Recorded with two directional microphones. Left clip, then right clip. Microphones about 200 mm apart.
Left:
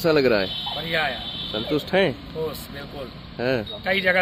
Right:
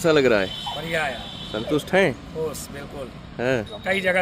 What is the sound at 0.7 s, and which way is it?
Speech, 15° right (ahead or behind).